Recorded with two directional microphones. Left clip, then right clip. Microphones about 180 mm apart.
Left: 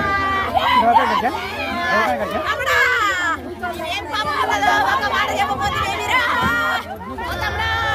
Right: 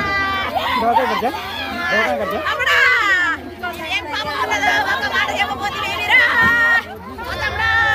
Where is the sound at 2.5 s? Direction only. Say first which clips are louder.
Right 3 dB; 75° left (ahead or behind).